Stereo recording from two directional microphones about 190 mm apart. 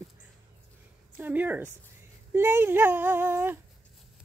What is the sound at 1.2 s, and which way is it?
Speech, 10° right (ahead or behind).